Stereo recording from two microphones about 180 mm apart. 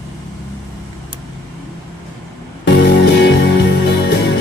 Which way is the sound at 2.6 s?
70° left (ahead or behind).